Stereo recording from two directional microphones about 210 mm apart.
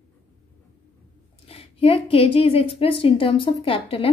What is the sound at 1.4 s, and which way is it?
A woman's voice, 25° left (ahead or behind).